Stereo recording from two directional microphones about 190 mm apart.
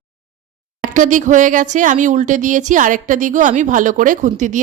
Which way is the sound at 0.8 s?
40° right (ahead or behind).